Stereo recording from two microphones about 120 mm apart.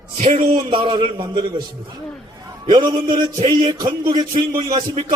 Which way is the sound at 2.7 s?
35° right (ahead or behind).